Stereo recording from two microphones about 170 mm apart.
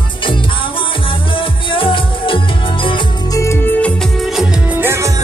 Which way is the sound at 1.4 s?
30° left (ahead or behind).